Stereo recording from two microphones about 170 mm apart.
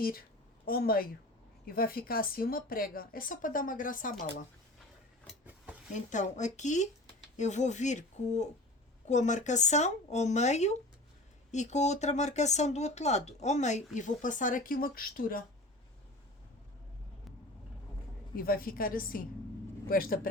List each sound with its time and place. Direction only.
0.0 s a woman's voice: 60° left (ahead or behind)
5.9 s a woman's voice: 45° left (ahead or behind)
18.3 s a woman's voice: 60° left (ahead or behind)